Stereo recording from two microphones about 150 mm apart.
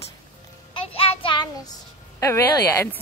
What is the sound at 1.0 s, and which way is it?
Speech, 35° left (ahead or behind).